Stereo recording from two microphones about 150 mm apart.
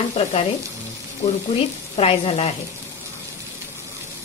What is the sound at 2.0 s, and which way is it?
Sizzle, 40° left (ahead or behind).